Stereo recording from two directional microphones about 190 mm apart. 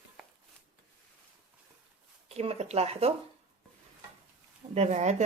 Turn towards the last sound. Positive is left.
turn(degrees=-35)  # may be behind; listen again after turning